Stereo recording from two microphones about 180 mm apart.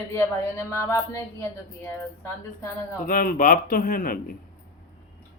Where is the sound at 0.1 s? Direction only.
15° left (ahead or behind).